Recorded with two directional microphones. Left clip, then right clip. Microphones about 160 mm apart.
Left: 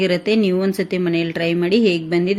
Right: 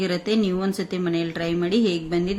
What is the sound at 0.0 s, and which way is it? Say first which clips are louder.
Speech: left 6 dB; 15° left (ahead or behind).